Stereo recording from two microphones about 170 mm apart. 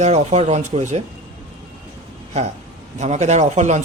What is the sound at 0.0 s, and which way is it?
Speech, 40° right (ahead or behind).